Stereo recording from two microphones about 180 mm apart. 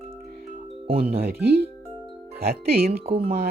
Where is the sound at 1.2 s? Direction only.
65° right (ahead or behind).